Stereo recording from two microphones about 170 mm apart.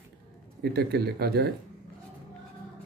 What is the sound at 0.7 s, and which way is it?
Speech, 70° right (ahead or behind).